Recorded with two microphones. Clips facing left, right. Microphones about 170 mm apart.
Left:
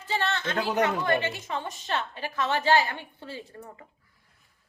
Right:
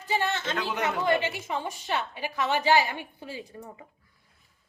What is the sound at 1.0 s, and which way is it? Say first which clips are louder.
A woman's voice: right 1 dB; 15° right (ahead or behind).